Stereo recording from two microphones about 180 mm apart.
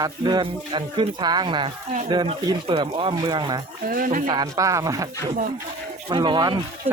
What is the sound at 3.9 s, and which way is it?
Speech, 50° right (ahead or behind).